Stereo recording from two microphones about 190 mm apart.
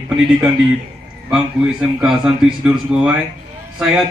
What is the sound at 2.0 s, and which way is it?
Speech, centre (ahead or behind).